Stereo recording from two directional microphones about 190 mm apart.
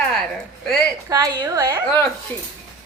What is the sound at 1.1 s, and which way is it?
Speech, 20° right (ahead or behind).